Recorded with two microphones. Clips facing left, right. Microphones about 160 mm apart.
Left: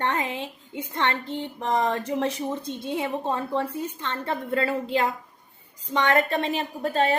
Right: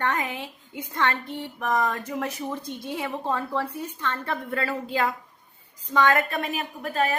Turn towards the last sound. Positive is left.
turn(degrees=30)  # may be behind; listen again after turning